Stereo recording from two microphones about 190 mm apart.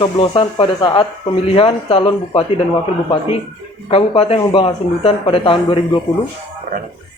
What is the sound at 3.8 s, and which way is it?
Speech, 30° left (ahead or behind).